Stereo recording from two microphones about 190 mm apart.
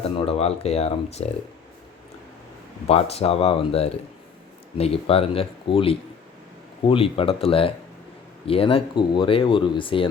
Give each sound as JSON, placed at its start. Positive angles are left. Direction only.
{"t": 0.2, "sound": "speech", "side_deg": 30}
{"t": 2.8, "sound": "speech", "side_deg": 35}